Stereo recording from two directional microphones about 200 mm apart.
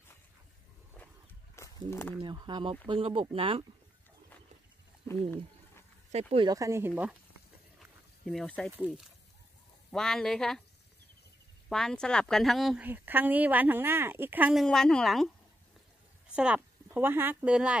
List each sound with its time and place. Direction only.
1.5 s a sound: 15° left (ahead or behind)
2.2 s speech: 25° right (ahead or behind)
6.1 s speech: 25° right (ahead or behind)
8.3 s speech: 5° left (ahead or behind)
8.7 s speech: 5° right (ahead or behind)
11.7 s speech: 5° left (ahead or behind)
16.3 s speech: 5° right (ahead or behind)